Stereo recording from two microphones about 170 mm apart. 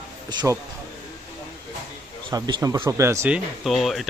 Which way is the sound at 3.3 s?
Centre (ahead or behind).